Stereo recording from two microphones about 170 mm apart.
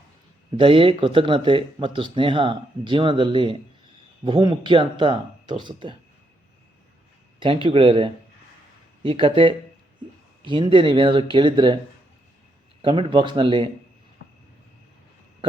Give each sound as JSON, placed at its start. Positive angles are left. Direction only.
{"t": 0.5, "sound": "speech", "side_deg": -30}
{"t": 7.3, "sound": "speech", "side_deg": -30}
{"t": 12.8, "sound": "speech", "side_deg": -30}